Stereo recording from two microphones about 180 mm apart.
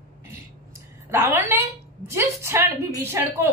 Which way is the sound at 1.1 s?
15° right (ahead or behind).